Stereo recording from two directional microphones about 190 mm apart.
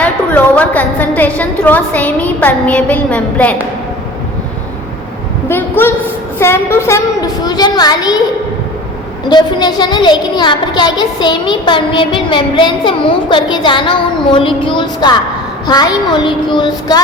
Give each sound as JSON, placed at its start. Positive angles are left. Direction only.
{"t": 0.0, "sound": "a woman's voice", "side_deg": 5}
{"t": 5.5, "sound": "a woman's voice", "side_deg": 10}
{"t": 9.3, "sound": "a woman's voice", "side_deg": 20}